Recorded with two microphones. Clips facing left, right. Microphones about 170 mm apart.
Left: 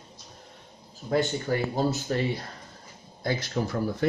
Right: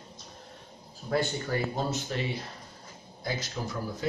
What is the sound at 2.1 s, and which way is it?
Speech, 45° left (ahead or behind).